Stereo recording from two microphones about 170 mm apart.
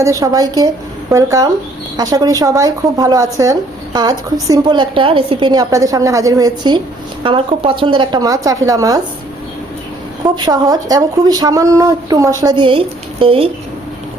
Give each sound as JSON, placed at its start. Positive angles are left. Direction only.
{"t": 0.0, "sound": "speech", "side_deg": -20}
{"t": 10.2, "sound": "speech", "side_deg": -25}